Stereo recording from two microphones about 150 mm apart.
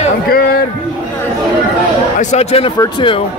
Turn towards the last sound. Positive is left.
turn(degrees=30)  # may be behind; listen again after turning